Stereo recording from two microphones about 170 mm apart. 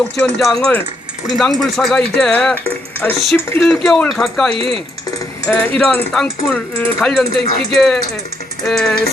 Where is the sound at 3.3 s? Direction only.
15° left (ahead or behind).